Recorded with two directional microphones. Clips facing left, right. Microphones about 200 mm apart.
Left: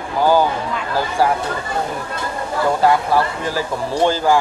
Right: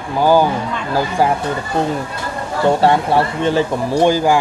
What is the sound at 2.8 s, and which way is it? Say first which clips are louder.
Speech: right 2 dB; 30° right (ahead or behind).